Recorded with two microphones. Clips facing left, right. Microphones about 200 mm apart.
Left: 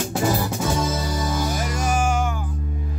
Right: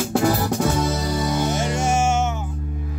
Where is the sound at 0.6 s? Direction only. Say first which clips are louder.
Right 2 dB; 65° right (ahead or behind).